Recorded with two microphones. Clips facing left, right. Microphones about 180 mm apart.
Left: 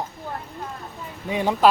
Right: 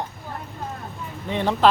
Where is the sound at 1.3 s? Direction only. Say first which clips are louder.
Even; 10° left (ahead or behind).